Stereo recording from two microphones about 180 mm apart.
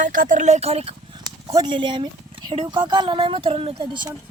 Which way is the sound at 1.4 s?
20° right (ahead or behind).